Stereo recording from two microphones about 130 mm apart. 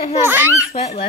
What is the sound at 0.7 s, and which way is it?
Speech, 50° left (ahead or behind).